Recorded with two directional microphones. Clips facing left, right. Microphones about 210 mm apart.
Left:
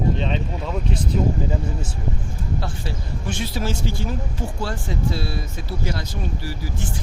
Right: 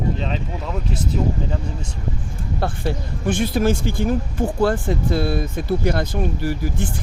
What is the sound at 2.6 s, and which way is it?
Speech, 55° right (ahead or behind).